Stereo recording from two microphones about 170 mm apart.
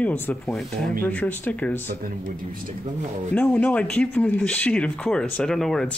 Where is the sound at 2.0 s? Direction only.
55° right (ahead or behind).